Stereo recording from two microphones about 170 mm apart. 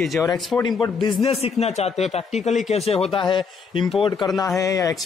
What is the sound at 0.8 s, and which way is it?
A man's voice, 30° left (ahead or behind).